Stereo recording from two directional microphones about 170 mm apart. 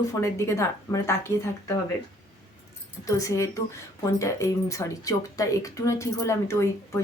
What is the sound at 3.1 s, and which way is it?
Speech, 20° left (ahead or behind).